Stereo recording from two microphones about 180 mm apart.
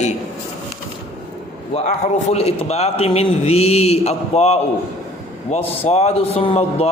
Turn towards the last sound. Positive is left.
turn(degrees=35)  # may be behind; listen again after turning